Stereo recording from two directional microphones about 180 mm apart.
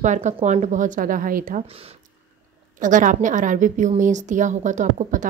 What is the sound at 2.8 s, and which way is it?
A woman's voice, 45° right (ahead or behind).